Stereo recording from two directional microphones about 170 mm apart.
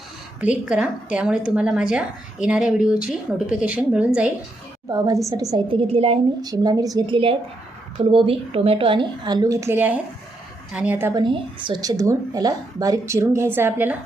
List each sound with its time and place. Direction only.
0.3 s a woman's voice: 10° right (ahead or behind)
4.9 s a woman's voice: 20° right (ahead or behind)
6.4 s a woman's voice: 25° right (ahead or behind)
11.2 s a woman's voice: 30° right (ahead or behind); by 13.9 s 10° right (ahead or behind)